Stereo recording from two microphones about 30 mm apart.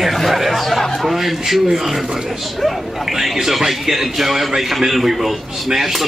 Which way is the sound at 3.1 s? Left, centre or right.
Centre.